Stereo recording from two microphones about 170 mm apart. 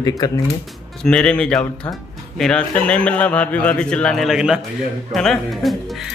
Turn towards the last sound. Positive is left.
turn(degrees=0)  # may be behind; listen again after turning